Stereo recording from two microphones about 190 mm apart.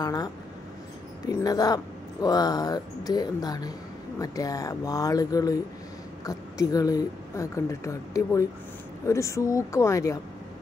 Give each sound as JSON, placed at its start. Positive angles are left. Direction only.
{"t": 0.0, "sound": "speech", "side_deg": 20}